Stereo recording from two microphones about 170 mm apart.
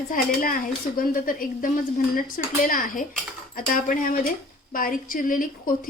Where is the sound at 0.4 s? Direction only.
55° left (ahead or behind).